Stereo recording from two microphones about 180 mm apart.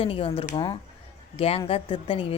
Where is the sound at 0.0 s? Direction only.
30° left (ahead or behind).